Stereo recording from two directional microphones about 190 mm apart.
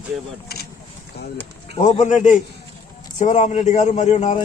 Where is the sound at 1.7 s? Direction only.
40° left (ahead or behind).